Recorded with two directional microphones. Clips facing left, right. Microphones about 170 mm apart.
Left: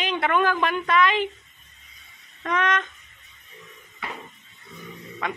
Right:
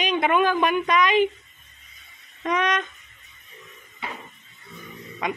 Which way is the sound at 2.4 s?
15° right (ahead or behind).